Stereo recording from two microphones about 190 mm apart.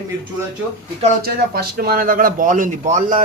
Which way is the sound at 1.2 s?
55° right (ahead or behind).